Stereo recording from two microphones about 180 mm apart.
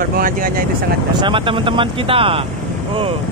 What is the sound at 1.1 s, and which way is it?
Speech, 25° right (ahead or behind).